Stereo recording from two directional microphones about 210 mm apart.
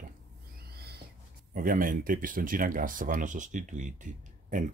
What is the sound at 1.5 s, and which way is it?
Speech, 40° right (ahead or behind).